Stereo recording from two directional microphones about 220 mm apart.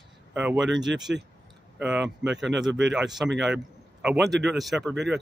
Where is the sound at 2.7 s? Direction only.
55° right (ahead or behind).